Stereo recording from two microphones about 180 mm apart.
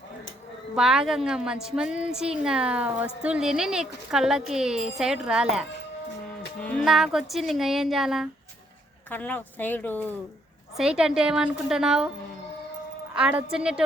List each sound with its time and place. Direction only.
0.8 s a woman's voice: 5° right (ahead or behind)
6.6 s a woman's voice: 5° left (ahead or behind)
9.0 s speech: 10° left (ahead or behind)
10.8 s a woman's voice: 5° right (ahead or behind)
13.1 s a woman's voice: 5° right (ahead or behind)